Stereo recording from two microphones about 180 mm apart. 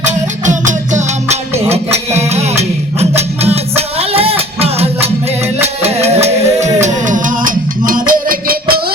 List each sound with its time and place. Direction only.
0.0 s music: 40° right (ahead or behind)